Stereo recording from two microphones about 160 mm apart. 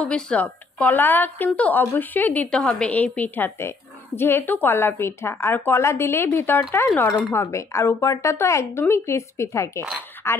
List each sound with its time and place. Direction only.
0.0 s speech: 5° left (ahead or behind)